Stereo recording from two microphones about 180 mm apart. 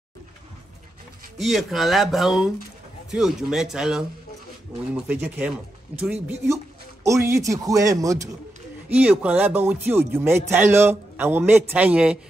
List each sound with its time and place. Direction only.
1.4 s speech: centre (ahead or behind)
5.1 s speech: 10° right (ahead or behind)
6.5 s speech: 15° right (ahead or behind)
8.8 s speech: 5° right (ahead or behind)